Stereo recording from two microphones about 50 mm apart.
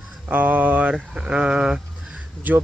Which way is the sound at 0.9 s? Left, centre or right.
Centre.